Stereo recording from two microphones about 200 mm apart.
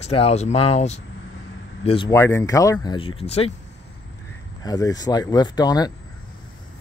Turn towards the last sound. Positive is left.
turn(degrees=20)  # may be behind; listen again after turning